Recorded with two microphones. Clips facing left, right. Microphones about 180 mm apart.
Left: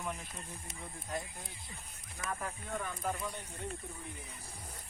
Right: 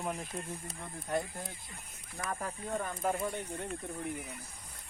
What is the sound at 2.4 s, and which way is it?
Speech, 35° right (ahead or behind).